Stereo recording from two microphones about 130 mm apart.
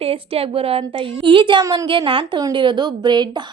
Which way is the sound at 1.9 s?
40° right (ahead or behind).